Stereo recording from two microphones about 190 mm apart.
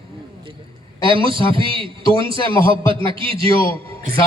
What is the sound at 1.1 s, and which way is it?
A man's voice, 25° right (ahead or behind).